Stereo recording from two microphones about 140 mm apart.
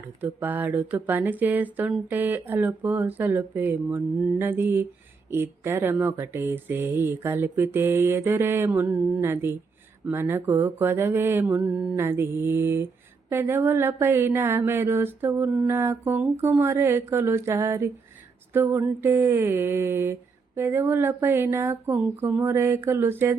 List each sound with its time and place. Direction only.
0.2 s speech: 15° right (ahead or behind)